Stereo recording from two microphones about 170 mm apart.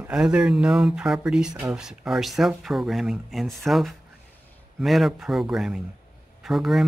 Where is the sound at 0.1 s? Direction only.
5° right (ahead or behind).